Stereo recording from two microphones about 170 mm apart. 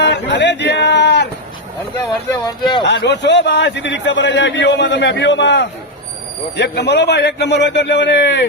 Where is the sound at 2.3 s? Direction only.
25° left (ahead or behind).